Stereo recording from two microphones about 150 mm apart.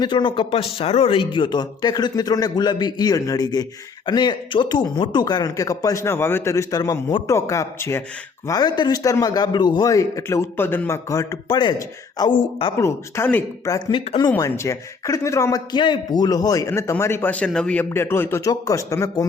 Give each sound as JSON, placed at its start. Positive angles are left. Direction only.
{"t": 0.0, "sound": "a man's voice", "side_deg": 30}
{"t": 13.7, "sound": "a man's voice", "side_deg": 30}